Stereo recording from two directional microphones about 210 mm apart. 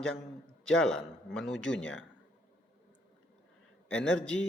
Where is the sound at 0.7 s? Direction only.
5° left (ahead or behind).